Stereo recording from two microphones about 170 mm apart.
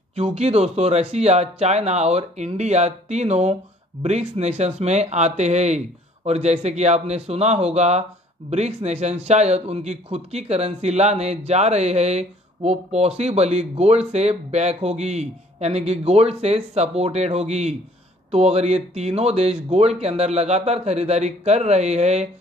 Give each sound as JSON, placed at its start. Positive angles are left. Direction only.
{"t": 0.1, "sound": "speech", "side_deg": -40}